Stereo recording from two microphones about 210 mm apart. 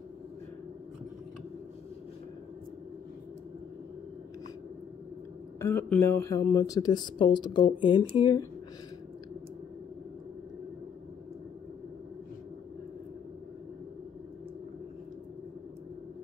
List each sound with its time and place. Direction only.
5.6 s speech: 10° left (ahead or behind)